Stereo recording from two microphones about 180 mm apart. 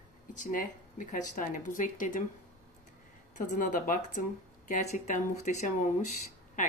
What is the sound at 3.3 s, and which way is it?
Speech, 45° left (ahead or behind).